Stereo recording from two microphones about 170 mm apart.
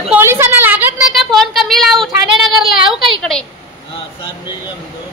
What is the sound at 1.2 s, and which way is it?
Speech, centre (ahead or behind).